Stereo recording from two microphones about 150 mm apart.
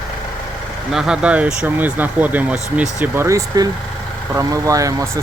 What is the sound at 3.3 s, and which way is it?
Speech, 25° right (ahead or behind).